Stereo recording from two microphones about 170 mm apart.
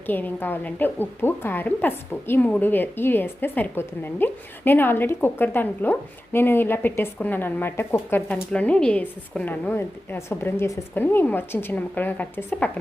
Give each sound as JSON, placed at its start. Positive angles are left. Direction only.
{"t": 0.1, "sound": "a woman's voice", "side_deg": 10}